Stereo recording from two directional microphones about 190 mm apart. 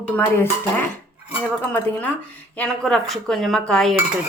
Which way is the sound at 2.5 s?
5° left (ahead or behind).